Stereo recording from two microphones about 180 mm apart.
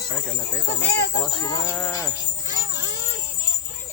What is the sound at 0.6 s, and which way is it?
Speech, 70° left (ahead or behind).